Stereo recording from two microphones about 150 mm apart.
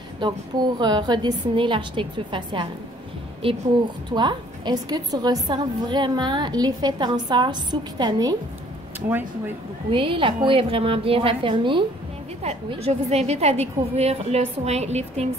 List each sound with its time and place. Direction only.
0.2 s a woman's voice: 30° right (ahead or behind)
9.8 s a woman's voice: 35° right (ahead or behind)
12.4 s a woman's voice: 45° right (ahead or behind)